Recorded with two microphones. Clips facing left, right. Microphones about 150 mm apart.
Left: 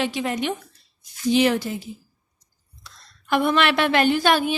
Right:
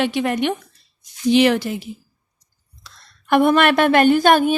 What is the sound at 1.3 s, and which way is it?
Speech, 70° right (ahead or behind).